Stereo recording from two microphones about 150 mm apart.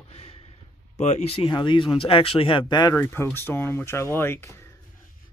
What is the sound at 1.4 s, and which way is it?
Speech, 30° left (ahead or behind).